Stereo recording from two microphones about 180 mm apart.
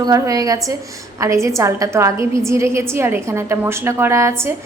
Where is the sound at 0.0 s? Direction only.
20° right (ahead or behind).